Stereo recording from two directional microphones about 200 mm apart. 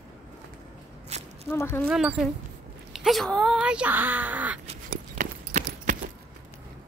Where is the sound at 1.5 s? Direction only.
10° left (ahead or behind).